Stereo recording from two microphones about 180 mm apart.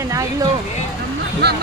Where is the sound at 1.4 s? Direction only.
65° right (ahead or behind).